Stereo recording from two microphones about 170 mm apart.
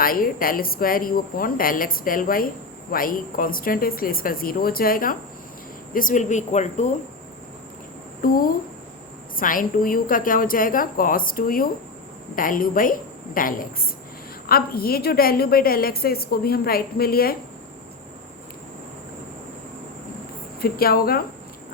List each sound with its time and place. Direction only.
0.0 s a woman's voice: 55° left (ahead or behind)
8.2 s a woman's voice: 55° left (ahead or behind)
20.6 s a woman's voice: 60° left (ahead or behind)